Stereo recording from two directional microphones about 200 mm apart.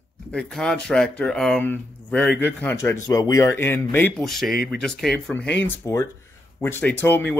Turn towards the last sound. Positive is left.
turn(degrees=10)  # may be behind; listen again after turning